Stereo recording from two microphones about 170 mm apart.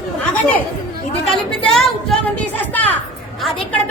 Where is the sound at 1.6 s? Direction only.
Centre (ahead or behind).